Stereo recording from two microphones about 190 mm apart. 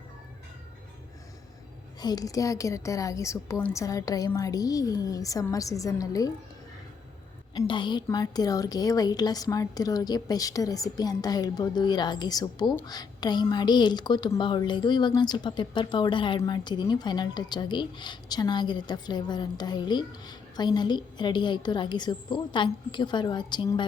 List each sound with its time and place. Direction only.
2.0 s a woman's voice: 20° left (ahead or behind)
7.5 s a woman's voice: 20° left (ahead or behind)